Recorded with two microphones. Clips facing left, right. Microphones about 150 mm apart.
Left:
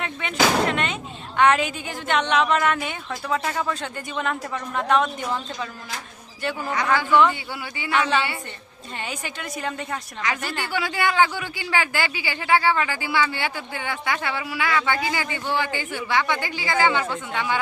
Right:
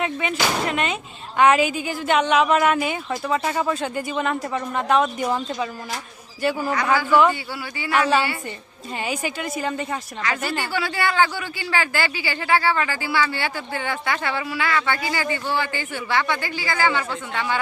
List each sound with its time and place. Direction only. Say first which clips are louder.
0.0 s a woman's voice: even; 5° right (ahead or behind)
9.0 s a woman's voice: right 6 dB; 10° right (ahead or behind)
10.4 s a woman's voice: right 3 dB; 15° right (ahead or behind)
10.7 s speech: left 2 dB; 15° left (ahead or behind)